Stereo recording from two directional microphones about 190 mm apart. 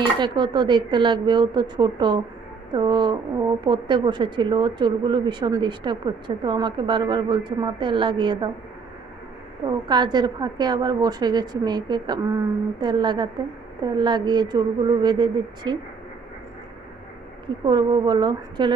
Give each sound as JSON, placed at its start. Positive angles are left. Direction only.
{"t": 0.0, "sound": "speech", "side_deg": -25}
{"t": 9.8, "sound": "speech", "side_deg": -20}
{"t": 17.6, "sound": "speech", "side_deg": -25}